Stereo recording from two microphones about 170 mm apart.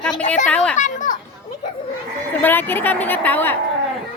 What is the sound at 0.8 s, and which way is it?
Children playing, 50° left (ahead or behind).